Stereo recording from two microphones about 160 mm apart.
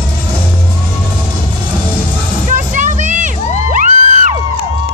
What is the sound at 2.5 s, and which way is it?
Music, 50° right (ahead or behind).